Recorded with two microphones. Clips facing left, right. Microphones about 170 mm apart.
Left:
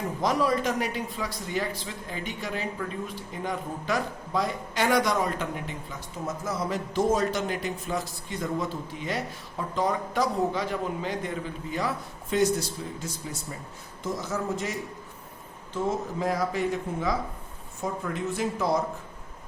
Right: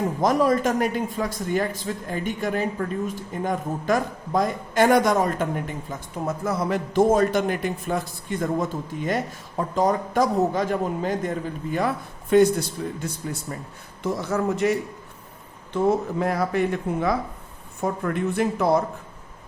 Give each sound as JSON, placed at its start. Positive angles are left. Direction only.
{"t": 0.2, "sound": "a man's voice", "side_deg": -45}